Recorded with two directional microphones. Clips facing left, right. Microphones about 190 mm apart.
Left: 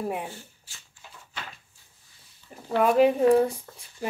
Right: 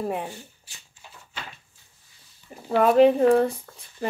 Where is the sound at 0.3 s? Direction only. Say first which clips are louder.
Right 2 dB; 15° right (ahead or behind).